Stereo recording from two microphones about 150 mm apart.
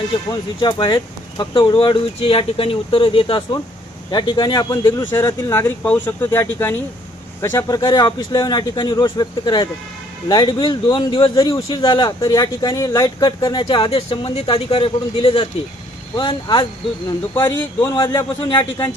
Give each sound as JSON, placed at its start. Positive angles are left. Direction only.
{"t": 0.3, "sound": "speech", "side_deg": 30}